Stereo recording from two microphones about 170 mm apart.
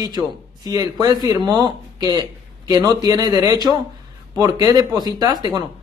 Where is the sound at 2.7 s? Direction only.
20° right (ahead or behind).